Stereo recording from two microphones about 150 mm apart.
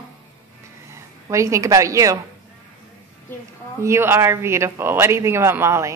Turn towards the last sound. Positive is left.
turn(degrees=-15)  # may be behind; listen again after turning